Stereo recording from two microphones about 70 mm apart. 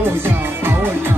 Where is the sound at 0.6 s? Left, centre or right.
Right.